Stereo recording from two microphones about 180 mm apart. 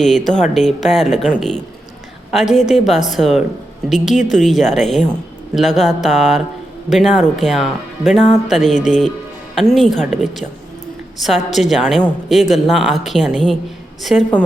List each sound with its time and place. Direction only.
0.0 s a woman's voice: centre (ahead or behind)
2.3 s a woman's voice: centre (ahead or behind)